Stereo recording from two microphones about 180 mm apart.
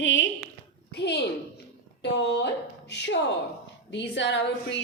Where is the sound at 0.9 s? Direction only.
70° left (ahead or behind).